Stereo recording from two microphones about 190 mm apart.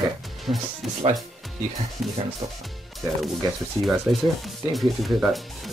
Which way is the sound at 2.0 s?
Centre (ahead or behind).